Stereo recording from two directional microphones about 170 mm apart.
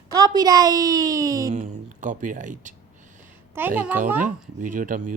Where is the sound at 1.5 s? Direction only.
50° right (ahead or behind).